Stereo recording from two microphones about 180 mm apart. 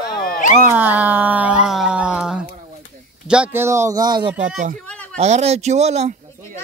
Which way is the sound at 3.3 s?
10° right (ahead or behind).